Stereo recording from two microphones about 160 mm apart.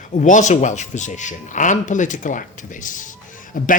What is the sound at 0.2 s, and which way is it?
A man's voice, 50° left (ahead or behind).